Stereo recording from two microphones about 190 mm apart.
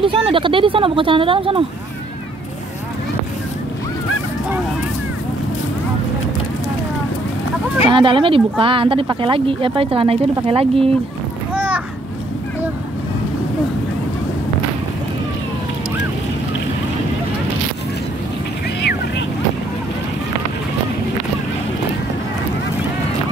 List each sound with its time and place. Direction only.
0.0 s speech: 30° right (ahead or behind)
7.9 s speech: 25° right (ahead or behind)
11.5 s a sound: 5° right (ahead or behind)